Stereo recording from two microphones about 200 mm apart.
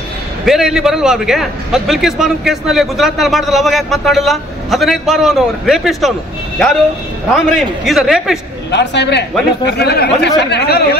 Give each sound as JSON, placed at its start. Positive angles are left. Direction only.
{"t": 0.5, "sound": "a man's voice", "side_deg": 0}
{"t": 7.3, "sound": "a man's voice", "side_deg": 0}
{"t": 8.7, "sound": "speech", "side_deg": 60}